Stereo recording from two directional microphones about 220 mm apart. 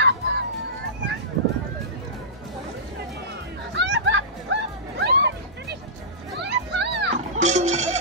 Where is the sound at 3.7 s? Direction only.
55° right (ahead or behind).